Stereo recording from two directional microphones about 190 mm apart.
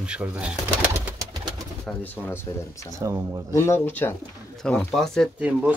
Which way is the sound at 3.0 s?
15° right (ahead or behind).